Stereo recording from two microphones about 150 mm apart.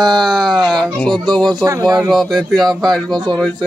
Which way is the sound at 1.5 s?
25° right (ahead or behind).